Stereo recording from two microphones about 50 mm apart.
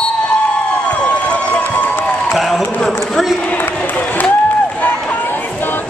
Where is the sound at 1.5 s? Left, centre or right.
Left.